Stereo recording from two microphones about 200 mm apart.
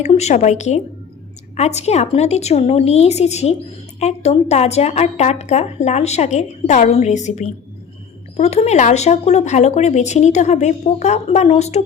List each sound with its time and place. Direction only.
0.0 s a woman's voice: 35° left (ahead or behind)